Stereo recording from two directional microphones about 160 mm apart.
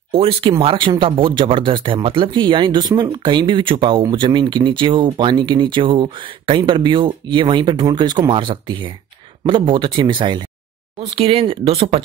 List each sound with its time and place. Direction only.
0.1 s speech: 35° right (ahead or behind)